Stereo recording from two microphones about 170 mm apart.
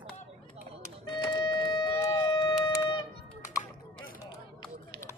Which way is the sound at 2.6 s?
25° left (ahead or behind).